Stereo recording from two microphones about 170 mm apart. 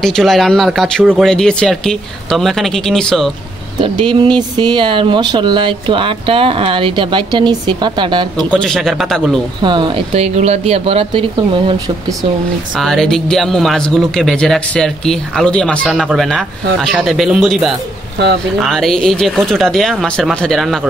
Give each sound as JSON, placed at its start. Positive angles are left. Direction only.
{"t": 0.0, "sound": "speech", "side_deg": 0}
{"t": 3.8, "sound": "speech", "side_deg": -30}
{"t": 8.5, "sound": "speech", "side_deg": 5}
{"t": 9.6, "sound": "speech", "side_deg": -25}
{"t": 12.7, "sound": "speech", "side_deg": 0}